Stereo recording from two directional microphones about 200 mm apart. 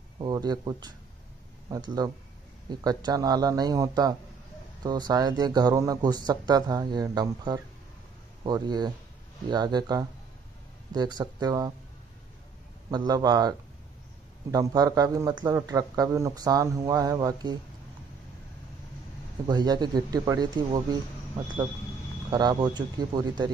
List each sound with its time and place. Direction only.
0.2 s speech: 20° right (ahead or behind)
12.9 s speech: 20° right (ahead or behind)
19.4 s speech: 20° right (ahead or behind)
22.3 s speech: 20° right (ahead or behind)